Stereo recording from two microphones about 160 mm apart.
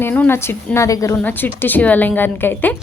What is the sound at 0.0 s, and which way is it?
A woman's voice, 10° left (ahead or behind).